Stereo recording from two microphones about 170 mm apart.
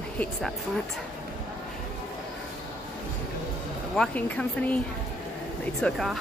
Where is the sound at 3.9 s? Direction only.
10° left (ahead or behind).